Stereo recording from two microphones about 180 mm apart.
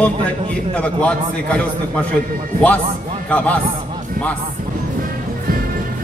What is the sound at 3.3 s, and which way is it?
Speech, 10° left (ahead or behind).